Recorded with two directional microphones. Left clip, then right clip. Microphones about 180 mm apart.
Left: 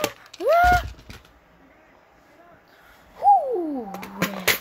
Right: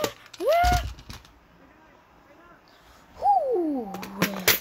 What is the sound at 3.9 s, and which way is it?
Pigeon, 15° left (ahead or behind).